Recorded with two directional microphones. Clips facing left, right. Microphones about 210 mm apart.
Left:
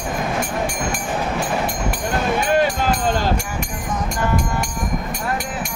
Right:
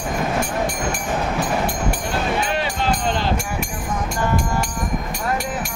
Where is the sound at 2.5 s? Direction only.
45° left (ahead or behind).